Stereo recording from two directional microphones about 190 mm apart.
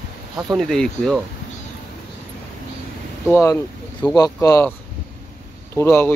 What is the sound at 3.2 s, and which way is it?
Speech, 10° left (ahead or behind).